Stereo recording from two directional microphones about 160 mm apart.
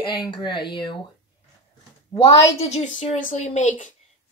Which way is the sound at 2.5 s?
40° left (ahead or behind).